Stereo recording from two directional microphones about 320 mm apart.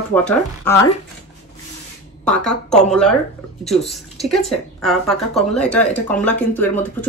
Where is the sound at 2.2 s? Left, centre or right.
Centre.